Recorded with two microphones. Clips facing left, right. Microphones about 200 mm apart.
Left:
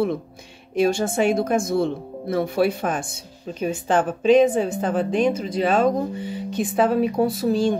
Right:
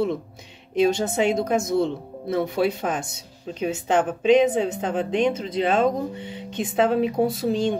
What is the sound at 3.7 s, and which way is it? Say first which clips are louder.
Speech: left 1 dB; 20° right (ahead or behind).